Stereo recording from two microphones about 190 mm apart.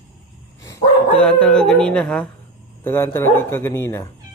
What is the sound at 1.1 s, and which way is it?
Speech, 5° left (ahead or behind).